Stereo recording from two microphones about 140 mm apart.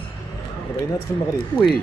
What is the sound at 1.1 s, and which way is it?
Speech, 20° left (ahead or behind).